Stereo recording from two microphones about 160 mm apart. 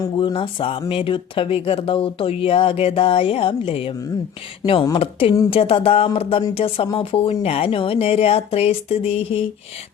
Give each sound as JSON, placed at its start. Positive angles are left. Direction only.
{"t": 0.2, "sound": "speech", "side_deg": 30}